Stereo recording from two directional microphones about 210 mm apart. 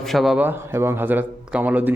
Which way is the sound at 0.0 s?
Centre (ahead or behind).